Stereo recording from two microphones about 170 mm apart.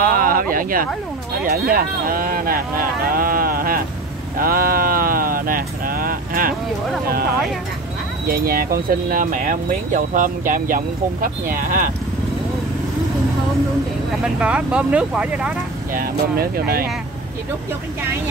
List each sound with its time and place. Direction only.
0.0 s a sound: 55° right (ahead or behind)
1.4 s speech: 60° right (ahead or behind)
4.4 s a sound: 60° right (ahead or behind)
8.3 s speech: 60° right (ahead or behind)
14.2 s speech: 5° right (ahead or behind)
15.9 s speech: 60° right (ahead or behind)